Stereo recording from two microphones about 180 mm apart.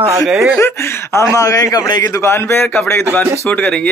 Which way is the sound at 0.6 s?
15° left (ahead or behind).